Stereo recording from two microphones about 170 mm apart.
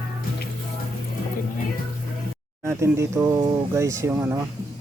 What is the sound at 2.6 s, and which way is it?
Speech, 15° right (ahead or behind).